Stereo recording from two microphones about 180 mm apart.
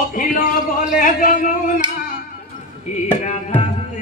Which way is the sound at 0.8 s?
45° left (ahead or behind).